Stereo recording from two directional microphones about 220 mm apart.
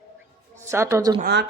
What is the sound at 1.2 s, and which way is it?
Speech, 50° right (ahead or behind).